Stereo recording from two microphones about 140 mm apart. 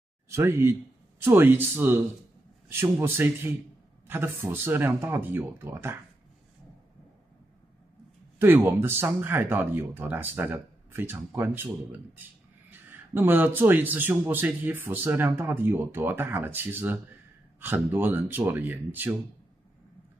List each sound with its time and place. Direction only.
0.3 s speech: 20° right (ahead or behind)
8.4 s speech: 15° right (ahead or behind)
13.1 s speech: 15° right (ahead or behind)